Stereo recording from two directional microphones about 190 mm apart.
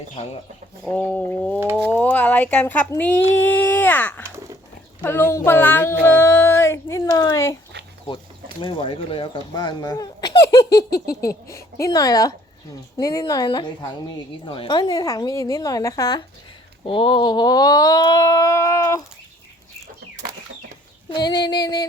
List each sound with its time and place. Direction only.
0.9 s child singing: 10° left (ahead or behind)
8.6 s speech: 25° left (ahead or behind)
21.1 s speech: 20° left (ahead or behind)